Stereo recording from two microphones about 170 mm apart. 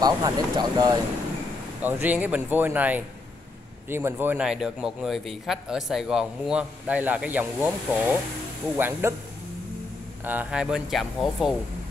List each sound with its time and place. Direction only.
0.0 s speech: 25° right (ahead or behind)
1.8 s a man's voice: 10° right (ahead or behind)
10.2 s a man's voice: 10° right (ahead or behind)